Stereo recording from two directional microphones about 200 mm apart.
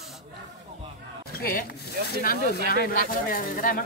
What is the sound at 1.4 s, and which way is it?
Speech, 45° left (ahead or behind).